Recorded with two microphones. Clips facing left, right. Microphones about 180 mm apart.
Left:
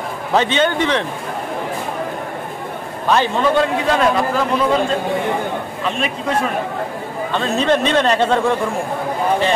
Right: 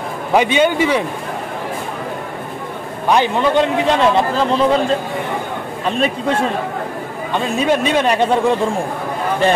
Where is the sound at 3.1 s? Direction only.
15° right (ahead or behind).